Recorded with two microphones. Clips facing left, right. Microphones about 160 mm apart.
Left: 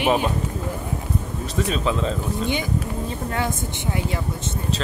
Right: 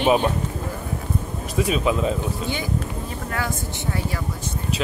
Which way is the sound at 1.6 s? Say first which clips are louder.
Right 2 dB; 10° right (ahead or behind).